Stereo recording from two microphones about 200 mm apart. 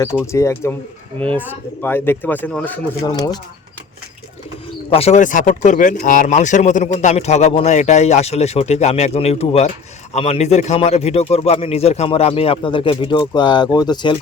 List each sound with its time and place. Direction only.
0.0 s speech: 15° left (ahead or behind)
1.8 s speech: 10° left (ahead or behind)
3.0 s speech: 20° left (ahead or behind)
4.9 s speech: 30° left (ahead or behind)